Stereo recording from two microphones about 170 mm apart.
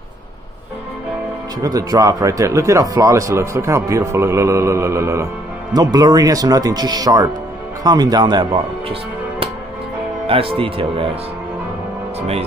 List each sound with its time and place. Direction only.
1.6 s speech: 20° right (ahead or behind)
10.2 s speech: 35° right (ahead or behind)